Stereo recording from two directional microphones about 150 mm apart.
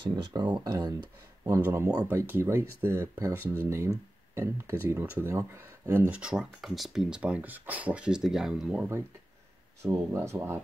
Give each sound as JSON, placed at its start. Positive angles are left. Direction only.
{"t": 0.1, "sound": "speech", "side_deg": -30}
{"t": 1.6, "sound": "speech", "side_deg": -15}